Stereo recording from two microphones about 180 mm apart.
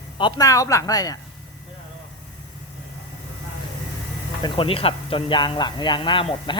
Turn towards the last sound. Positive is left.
turn(degrees=25)  # may be behind; listen again after turning